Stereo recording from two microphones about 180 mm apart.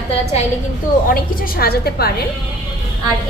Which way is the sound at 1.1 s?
55° left (ahead or behind).